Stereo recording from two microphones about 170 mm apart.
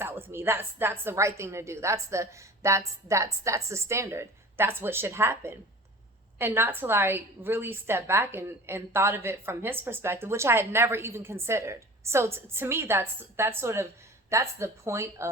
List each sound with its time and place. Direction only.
0.0 s a woman's voice: 15° right (ahead or behind)